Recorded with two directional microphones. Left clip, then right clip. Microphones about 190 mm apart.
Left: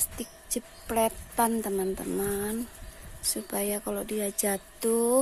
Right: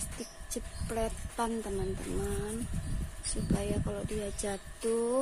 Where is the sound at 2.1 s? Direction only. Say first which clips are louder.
Left 5 dB; 40° left (ahead or behind).